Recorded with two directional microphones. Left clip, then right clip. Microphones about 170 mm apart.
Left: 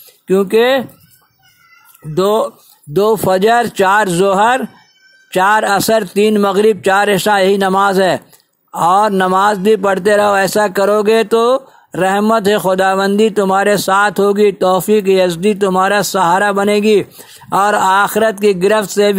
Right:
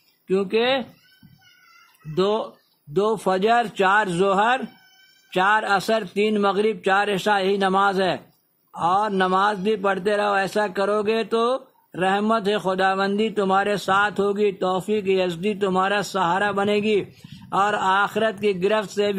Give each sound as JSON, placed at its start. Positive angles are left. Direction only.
{"t": 0.3, "sound": "a man's voice", "side_deg": 35}
{"t": 2.1, "sound": "a man's voice", "side_deg": 45}